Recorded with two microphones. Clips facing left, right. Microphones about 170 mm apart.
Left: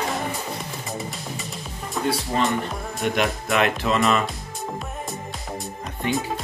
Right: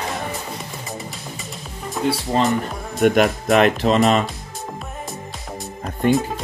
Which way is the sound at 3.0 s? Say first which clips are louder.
Right 8 dB; 45° right (ahead or behind).